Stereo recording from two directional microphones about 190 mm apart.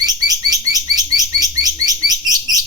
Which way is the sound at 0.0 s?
20° right (ahead or behind).